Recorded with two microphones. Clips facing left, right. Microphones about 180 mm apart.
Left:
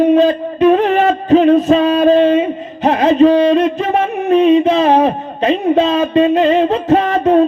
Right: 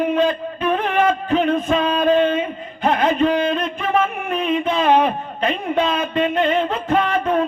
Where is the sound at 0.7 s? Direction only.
35° left (ahead or behind).